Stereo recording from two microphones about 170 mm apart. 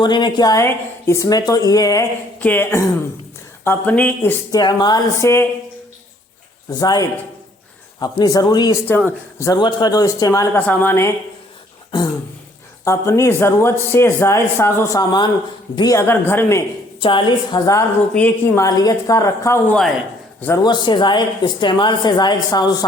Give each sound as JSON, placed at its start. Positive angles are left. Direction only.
{"t": 0.0, "sound": "speech", "side_deg": 25}
{"t": 2.4, "sound": "speech", "side_deg": 10}
{"t": 4.5, "sound": "speech", "side_deg": 25}
{"t": 6.7, "sound": "speech", "side_deg": 20}
{"t": 8.9, "sound": "speech", "side_deg": 10}
{"t": 9.5, "sound": "speech", "side_deg": 25}
{"t": 12.8, "sound": "speech", "side_deg": 15}
{"t": 17.0, "sound": "speech", "side_deg": 30}
{"t": 20.4, "sound": "speech", "side_deg": 20}